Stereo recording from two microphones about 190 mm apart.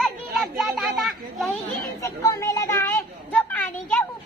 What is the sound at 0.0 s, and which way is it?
Children playing, centre (ahead or behind).